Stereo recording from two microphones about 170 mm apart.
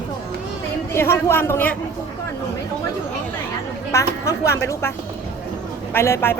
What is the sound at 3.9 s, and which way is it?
Speech, 15° left (ahead or behind).